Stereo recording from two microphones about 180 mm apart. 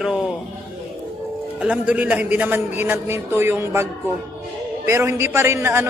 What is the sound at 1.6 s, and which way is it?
A man's voice, 5° right (ahead or behind).